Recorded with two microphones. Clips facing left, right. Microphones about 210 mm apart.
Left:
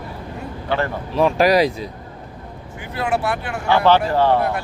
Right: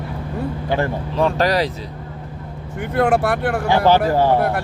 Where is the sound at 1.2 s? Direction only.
10° left (ahead or behind).